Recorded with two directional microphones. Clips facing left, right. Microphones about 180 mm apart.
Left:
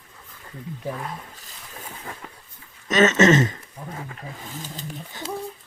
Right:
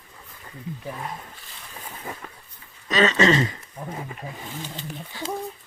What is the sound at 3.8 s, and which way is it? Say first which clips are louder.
Speech: right 1 dB; 15° right (ahead or behind).